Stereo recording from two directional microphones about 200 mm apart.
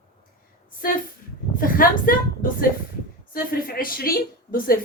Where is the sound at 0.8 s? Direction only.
45° left (ahead or behind).